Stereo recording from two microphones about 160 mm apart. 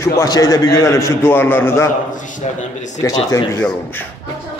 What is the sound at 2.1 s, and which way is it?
Speech, 55° left (ahead or behind).